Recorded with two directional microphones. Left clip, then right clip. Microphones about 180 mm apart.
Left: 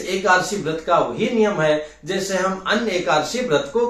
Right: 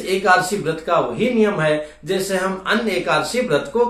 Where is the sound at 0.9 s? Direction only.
15° right (ahead or behind).